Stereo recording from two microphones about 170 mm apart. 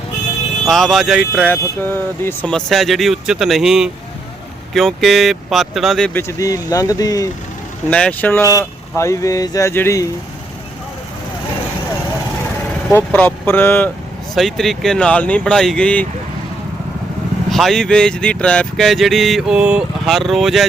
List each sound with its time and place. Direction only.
0.6 s speech: centre (ahead or behind)
1.5 s speech: 10° left (ahead or behind)
6.1 s speech: 20° left (ahead or behind)
7.9 s speech: 5° left (ahead or behind)
12.9 s speech: 10° left (ahead or behind)
17.5 s speech: centre (ahead or behind)